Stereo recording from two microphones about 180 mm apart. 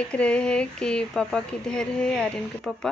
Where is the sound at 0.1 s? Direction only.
5° left (ahead or behind).